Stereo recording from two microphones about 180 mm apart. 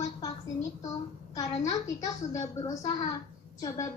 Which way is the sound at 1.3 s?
20° left (ahead or behind).